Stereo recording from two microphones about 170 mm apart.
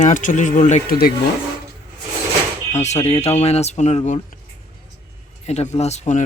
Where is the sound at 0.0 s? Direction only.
45° left (ahead or behind).